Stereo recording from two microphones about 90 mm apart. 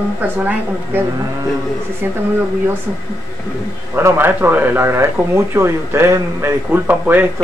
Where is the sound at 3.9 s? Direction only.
25° right (ahead or behind).